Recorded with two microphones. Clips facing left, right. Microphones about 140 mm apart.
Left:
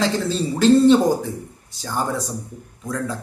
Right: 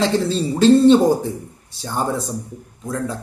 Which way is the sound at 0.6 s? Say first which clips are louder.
Right 2 dB; 25° right (ahead or behind).